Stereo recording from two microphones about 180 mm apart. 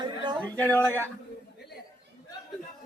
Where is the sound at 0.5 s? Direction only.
10° left (ahead or behind).